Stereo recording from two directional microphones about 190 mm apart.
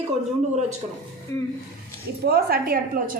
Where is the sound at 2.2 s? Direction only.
55° right (ahead or behind).